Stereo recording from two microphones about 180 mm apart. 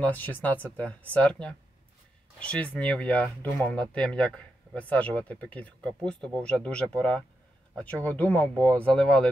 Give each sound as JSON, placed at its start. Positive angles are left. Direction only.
{"t": 0.0, "sound": "speech", "side_deg": 10}